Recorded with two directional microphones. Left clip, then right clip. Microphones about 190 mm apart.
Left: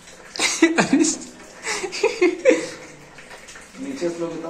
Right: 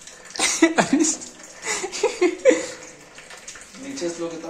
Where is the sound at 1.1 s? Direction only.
25° right (ahead or behind).